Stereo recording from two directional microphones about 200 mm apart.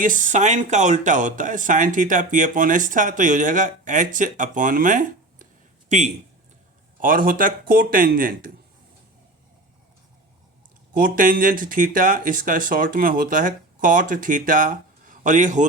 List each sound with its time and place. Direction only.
0.0 s speech: 40° right (ahead or behind)
10.9 s speech: 45° right (ahead or behind)